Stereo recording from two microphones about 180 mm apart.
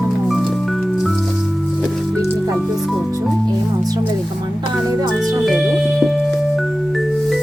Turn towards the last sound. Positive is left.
turn(degrees=0)  # may be behind; listen again after turning